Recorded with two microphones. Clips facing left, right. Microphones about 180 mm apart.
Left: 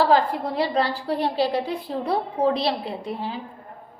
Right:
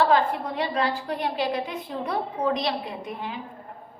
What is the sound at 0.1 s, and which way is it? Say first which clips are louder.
A woman's voice: left 2 dB; 35° left (ahead or behind).